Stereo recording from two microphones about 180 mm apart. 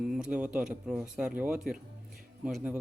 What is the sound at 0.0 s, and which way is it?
Speech, 5° right (ahead or behind).